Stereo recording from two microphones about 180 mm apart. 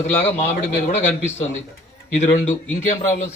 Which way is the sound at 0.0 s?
40° left (ahead or behind).